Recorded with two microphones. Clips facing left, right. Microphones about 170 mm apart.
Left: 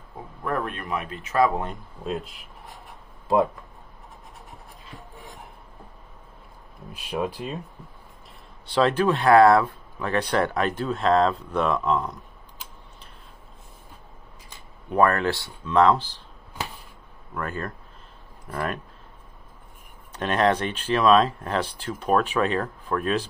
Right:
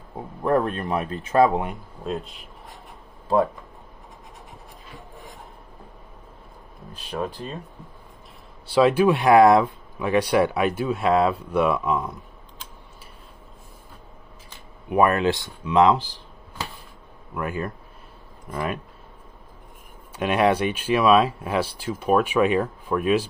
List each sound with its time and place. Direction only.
0.5 s speech: 30° right (ahead or behind)
2.0 s speech: centre (ahead or behind)
6.9 s speech: 10° left (ahead or behind)
8.6 s speech: 10° right (ahead or behind)
14.9 s speech: 15° right (ahead or behind)
17.3 s speech: 10° right (ahead or behind)
20.2 s speech: 10° right (ahead or behind)